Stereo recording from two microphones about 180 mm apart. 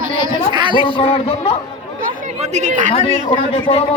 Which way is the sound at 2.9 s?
30° left (ahead or behind).